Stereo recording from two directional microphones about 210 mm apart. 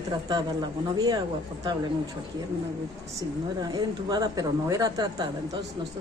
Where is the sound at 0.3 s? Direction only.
20° right (ahead or behind).